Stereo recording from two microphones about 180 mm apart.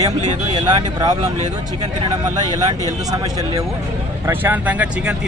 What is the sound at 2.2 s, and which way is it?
A man's voice, 20° right (ahead or behind).